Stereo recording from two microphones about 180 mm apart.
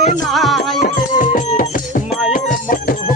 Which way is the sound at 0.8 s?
45° left (ahead or behind).